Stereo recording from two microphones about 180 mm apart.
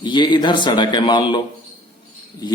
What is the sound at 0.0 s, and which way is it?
Speech, 25° left (ahead or behind).